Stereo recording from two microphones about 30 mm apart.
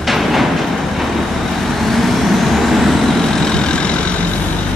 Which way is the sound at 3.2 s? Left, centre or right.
Left.